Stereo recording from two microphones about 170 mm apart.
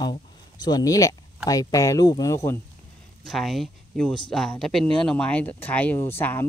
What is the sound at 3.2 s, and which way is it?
Speech, centre (ahead or behind).